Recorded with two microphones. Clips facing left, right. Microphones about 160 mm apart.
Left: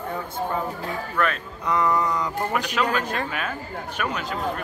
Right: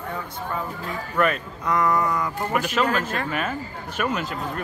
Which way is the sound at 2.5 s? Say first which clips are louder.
Right 3 dB; 5° right (ahead or behind).